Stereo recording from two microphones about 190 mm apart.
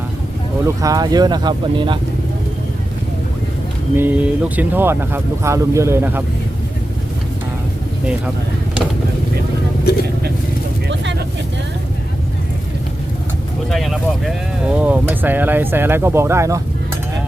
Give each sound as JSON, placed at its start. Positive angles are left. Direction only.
{"t": 0.6, "sound": "speech", "side_deg": -20}
{"t": 3.9, "sound": "speech", "side_deg": -10}
{"t": 9.9, "sound": "vehicle", "side_deg": 55}
{"t": 10.8, "sound": "vehicle", "side_deg": -65}
{"t": 13.7, "sound": "speech", "side_deg": 0}